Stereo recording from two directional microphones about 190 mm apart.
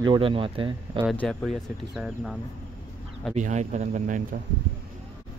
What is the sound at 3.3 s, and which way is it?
Speech, 40° right (ahead or behind).